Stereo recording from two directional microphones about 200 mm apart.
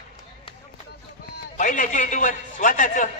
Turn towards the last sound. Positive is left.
turn(degrees=40)  # may be behind; listen again after turning